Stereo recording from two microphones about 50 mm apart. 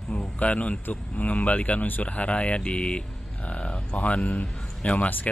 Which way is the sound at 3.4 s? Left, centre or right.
Left.